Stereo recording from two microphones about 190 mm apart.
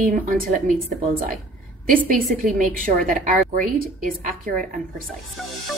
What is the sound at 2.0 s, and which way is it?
A woman's voice, 45° right (ahead or behind).